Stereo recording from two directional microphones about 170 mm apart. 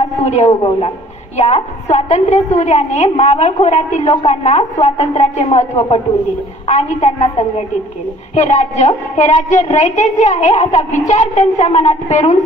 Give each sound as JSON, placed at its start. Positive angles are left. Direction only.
{"t": 0.2, "sound": "a woman's voice", "side_deg": 40}